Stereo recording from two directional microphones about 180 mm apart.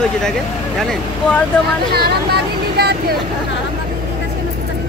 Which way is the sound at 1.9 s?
65° right (ahead or behind).